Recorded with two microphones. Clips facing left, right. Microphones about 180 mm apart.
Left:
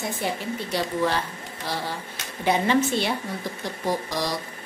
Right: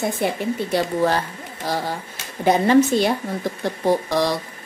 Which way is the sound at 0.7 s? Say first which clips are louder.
Right 4 dB; 45° right (ahead or behind).